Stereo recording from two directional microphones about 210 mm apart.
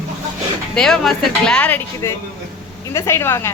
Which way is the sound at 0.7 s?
Centre (ahead or behind).